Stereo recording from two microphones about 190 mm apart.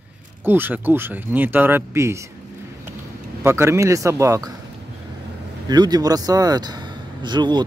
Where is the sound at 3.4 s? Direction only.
15° right (ahead or behind).